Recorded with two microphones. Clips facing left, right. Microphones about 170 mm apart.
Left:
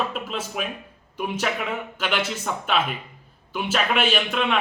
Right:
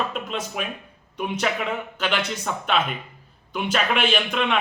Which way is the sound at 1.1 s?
5° left (ahead or behind).